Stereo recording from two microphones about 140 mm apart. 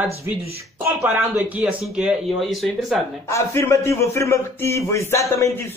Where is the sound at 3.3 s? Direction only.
20° left (ahead or behind).